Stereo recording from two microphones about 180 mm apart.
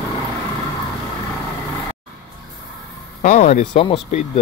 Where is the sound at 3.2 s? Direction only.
35° left (ahead or behind).